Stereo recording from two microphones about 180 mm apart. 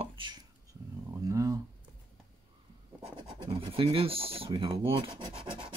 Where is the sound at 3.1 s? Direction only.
25° right (ahead or behind).